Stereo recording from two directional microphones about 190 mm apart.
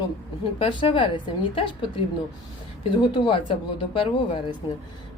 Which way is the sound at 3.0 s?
25° left (ahead or behind).